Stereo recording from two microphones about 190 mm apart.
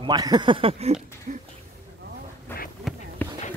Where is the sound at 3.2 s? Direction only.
10° left (ahead or behind).